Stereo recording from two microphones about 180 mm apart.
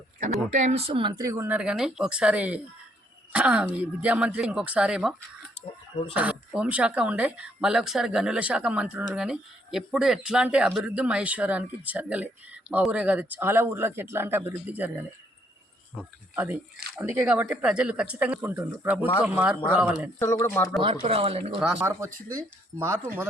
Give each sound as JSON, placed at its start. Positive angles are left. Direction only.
{"t": 0.2, "sound": "speech", "side_deg": -40}
{"t": 6.1, "sound": "speech", "side_deg": -10}
{"t": 16.3, "sound": "speech", "side_deg": -10}
{"t": 20.1, "sound": "speech", "side_deg": 15}
{"t": 20.8, "sound": "speech", "side_deg": -30}
{"t": 21.6, "sound": "speech", "side_deg": -5}
{"t": 21.8, "sound": "speech", "side_deg": -15}